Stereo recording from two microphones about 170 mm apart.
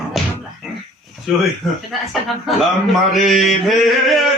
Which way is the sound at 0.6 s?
Centre (ahead or behind).